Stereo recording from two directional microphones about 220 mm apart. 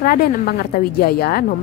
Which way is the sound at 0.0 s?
40° left (ahead or behind).